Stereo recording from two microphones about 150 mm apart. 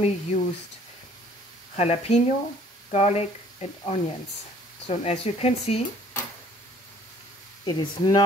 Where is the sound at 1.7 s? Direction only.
45° left (ahead or behind).